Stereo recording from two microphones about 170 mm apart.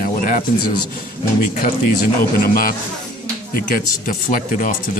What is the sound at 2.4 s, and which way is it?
Speech, 55° left (ahead or behind).